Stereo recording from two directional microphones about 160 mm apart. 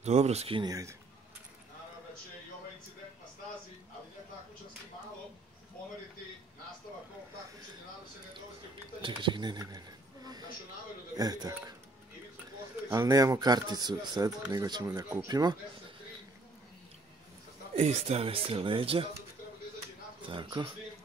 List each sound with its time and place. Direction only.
0.0 s speech: 45° right (ahead or behind)
0.7 s speech: 20° right (ahead or behind)
9.0 s a sound: 30° right (ahead or behind)
11.1 s speech: 25° right (ahead or behind)
12.9 s speech: 20° right (ahead or behind)
17.7 s speech: 45° right (ahead or behind)
20.2 s speech: 30° right (ahead or behind)